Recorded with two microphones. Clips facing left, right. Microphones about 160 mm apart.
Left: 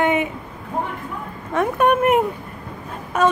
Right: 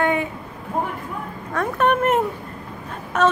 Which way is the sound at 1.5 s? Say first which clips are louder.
Left 3 dB; 20° left (ahead or behind).